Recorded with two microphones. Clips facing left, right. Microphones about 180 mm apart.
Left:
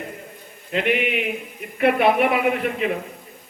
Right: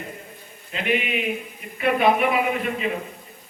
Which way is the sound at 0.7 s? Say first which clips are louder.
Left 3 dB; 65° left (ahead or behind).